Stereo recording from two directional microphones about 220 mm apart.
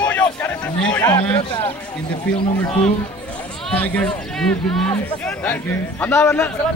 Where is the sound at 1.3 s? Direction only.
25° left (ahead or behind).